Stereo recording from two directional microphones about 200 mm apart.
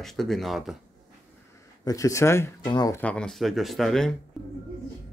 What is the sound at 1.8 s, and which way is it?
Speech, 15° left (ahead or behind).